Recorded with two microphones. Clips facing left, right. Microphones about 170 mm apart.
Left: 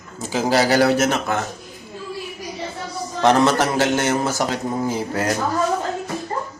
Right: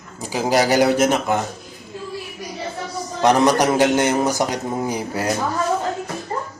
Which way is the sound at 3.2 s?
15° right (ahead or behind).